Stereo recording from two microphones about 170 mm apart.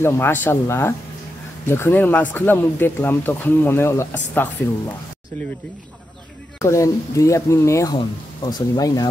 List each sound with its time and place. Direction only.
0.0 s speech: 10° left (ahead or behind)
6.6 s speech: 15° left (ahead or behind)